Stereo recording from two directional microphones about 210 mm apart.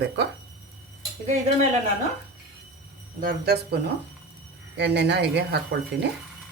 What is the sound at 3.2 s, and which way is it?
Speech, 50° right (ahead or behind).